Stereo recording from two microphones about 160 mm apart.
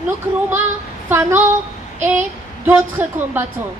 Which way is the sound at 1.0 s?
15° right (ahead or behind).